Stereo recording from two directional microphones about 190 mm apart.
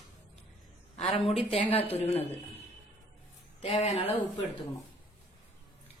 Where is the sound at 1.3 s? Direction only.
30° left (ahead or behind).